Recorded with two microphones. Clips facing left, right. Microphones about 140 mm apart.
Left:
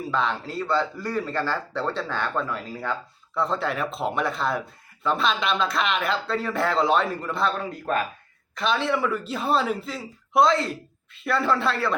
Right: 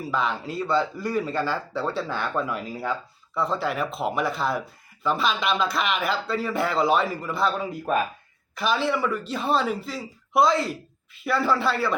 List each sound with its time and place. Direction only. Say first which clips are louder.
0.1 s speech: even; 5° right (ahead or behind)
3.3 s speech: even; centre (ahead or behind)